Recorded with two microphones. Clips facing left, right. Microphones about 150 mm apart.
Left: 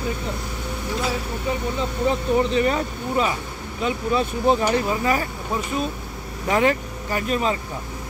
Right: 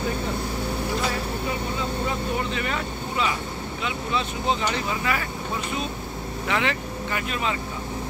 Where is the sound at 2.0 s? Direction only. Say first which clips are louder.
Left 7 dB; 35° left (ahead or behind).